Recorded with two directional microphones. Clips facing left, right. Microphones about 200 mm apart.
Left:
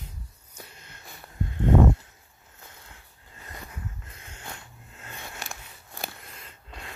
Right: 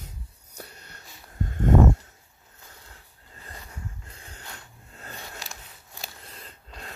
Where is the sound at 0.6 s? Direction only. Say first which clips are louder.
Right 3 dB; 40° right (ahead or behind).